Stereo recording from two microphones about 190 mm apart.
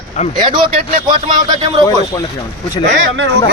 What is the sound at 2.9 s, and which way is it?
Speech, 80° right.